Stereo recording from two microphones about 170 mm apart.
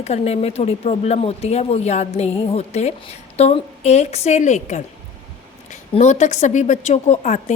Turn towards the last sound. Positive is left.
turn(degrees=45)  # may be behind; listen again after turning